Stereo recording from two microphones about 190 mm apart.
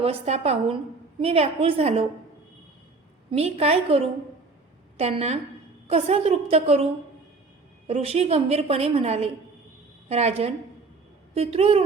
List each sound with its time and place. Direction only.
0.0 s a woman's voice: 35° right (ahead or behind)
3.3 s a woman's voice: 30° right (ahead or behind)
7.9 s a woman's voice: 30° right (ahead or behind)